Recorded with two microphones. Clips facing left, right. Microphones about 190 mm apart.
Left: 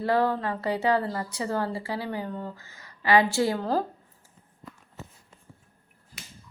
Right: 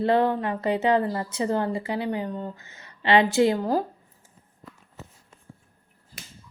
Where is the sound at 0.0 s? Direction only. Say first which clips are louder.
Right 3 dB; 20° right (ahead or behind).